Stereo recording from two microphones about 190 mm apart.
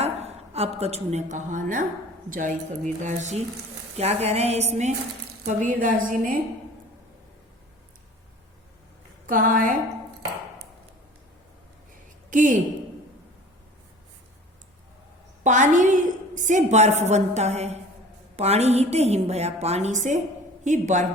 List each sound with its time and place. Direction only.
0.0 s a sound: 35° right (ahead or behind)
0.8 s a woman's voice: 35° right (ahead or behind)
9.2 s a woman's voice: 45° right (ahead or behind)
12.3 s speech: 45° right (ahead or behind)
15.4 s a woman's voice: 40° right (ahead or behind)